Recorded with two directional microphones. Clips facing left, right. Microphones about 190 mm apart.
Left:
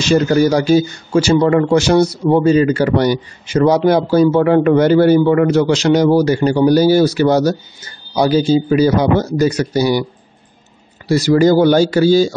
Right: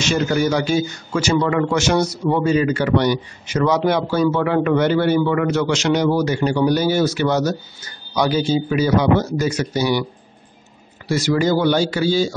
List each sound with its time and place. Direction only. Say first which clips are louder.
0.0 s a man's voice: left 6 dB; 35° left (ahead or behind)
11.1 s a man's voice: left 7 dB; 35° left (ahead or behind)